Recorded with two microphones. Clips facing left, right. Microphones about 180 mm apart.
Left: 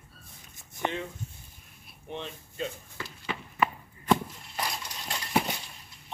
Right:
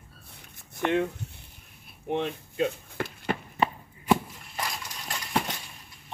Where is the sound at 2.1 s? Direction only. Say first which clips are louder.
Right 10 dB; 65° right (ahead or behind).